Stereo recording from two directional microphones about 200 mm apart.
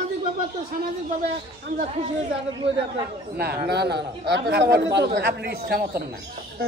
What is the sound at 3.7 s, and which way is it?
Speech, 55° right (ahead or behind).